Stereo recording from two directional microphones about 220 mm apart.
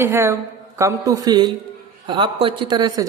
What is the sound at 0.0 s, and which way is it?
A man's voice, 10° right (ahead or behind).